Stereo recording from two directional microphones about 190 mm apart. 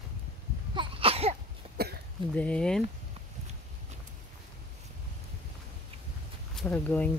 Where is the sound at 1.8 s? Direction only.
55° right (ahead or behind).